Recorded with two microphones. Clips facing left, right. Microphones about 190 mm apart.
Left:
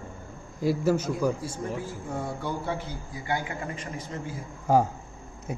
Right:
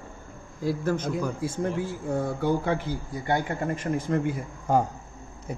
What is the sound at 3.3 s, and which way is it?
A man's voice, 45° right (ahead or behind).